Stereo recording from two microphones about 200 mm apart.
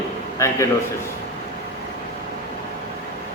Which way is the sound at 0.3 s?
15° left (ahead or behind).